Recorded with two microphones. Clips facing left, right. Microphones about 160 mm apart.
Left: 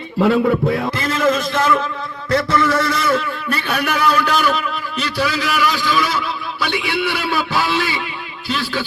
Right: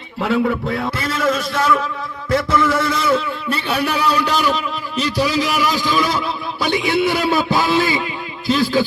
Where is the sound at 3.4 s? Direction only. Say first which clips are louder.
Right 1 dB; 30° right (ahead or behind).